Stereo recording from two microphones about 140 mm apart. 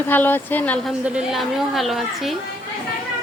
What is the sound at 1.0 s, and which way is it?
A woman's voice, 5° right (ahead or behind).